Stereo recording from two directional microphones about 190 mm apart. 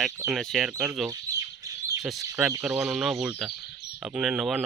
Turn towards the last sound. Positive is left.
turn(degrees=0)  # may be behind; listen again after turning